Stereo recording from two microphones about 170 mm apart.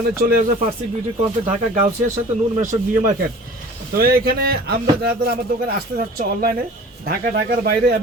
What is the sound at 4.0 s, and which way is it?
Speech, 60° right (ahead or behind).